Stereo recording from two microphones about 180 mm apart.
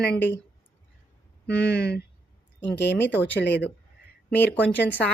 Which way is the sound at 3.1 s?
10° left (ahead or behind).